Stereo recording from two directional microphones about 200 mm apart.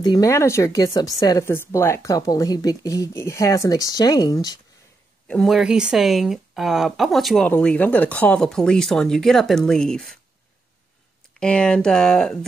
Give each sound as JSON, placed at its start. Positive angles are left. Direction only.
{"t": 0.0, "sound": "speech", "side_deg": 20}
{"t": 5.3, "sound": "a woman's voice", "side_deg": 0}
{"t": 11.3, "sound": "a woman's voice", "side_deg": 5}